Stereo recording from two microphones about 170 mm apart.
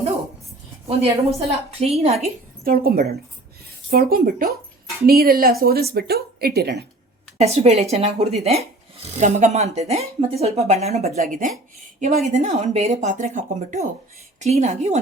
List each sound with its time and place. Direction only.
1.4 s speech: 35° right (ahead or behind)
2.6 s a woman's voice: 60° right (ahead or behind)
7.3 s a woman's voice: 40° right (ahead or behind)